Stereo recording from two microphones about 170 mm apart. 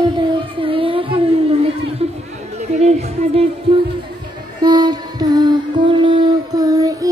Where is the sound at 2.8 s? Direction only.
40° right (ahead or behind).